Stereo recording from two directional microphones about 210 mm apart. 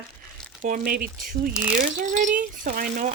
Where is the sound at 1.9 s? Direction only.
40° right (ahead or behind).